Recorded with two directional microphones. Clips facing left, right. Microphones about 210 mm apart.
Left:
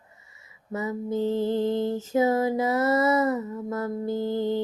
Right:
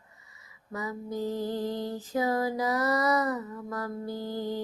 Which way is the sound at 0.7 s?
25° left (ahead or behind).